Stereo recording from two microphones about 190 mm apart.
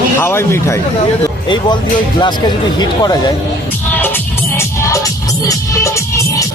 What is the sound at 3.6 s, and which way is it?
Music, 10° left (ahead or behind).